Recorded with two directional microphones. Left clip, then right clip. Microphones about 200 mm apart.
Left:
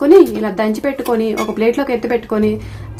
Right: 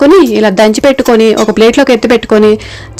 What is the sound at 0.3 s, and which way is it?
Speech, 30° right (ahead or behind).